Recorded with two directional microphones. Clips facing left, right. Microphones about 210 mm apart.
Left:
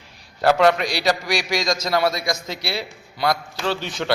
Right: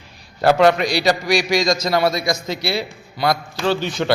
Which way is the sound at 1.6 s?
20° right (ahead or behind).